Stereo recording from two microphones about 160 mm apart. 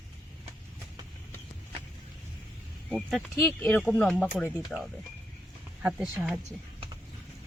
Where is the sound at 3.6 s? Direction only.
10° left (ahead or behind).